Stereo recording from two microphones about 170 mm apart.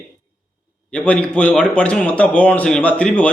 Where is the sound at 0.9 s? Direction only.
5° left (ahead or behind).